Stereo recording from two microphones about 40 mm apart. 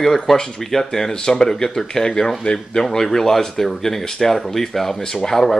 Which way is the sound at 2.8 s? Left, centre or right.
Centre.